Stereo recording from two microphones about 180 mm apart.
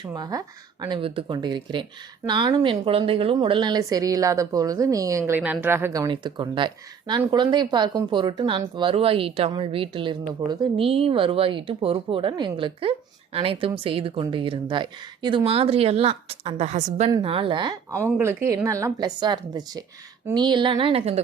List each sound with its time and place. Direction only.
0.0 s speech: 20° right (ahead or behind); by 17.1 s 40° right (ahead or behind)
17.1 s speech: 25° right (ahead or behind)
18.2 s speech: 15° right (ahead or behind); by 21.2 s 35° right (ahead or behind)